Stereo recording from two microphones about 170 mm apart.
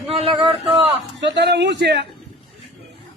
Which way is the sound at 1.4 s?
85° right.